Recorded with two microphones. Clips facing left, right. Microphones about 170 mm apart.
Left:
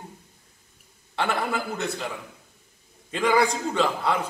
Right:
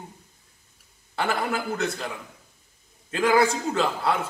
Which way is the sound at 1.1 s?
5° right (ahead or behind).